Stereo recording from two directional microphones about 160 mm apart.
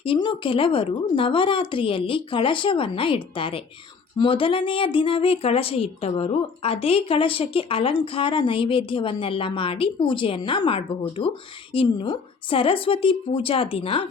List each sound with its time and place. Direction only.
0.0 s a woman's voice: 30° left (ahead or behind)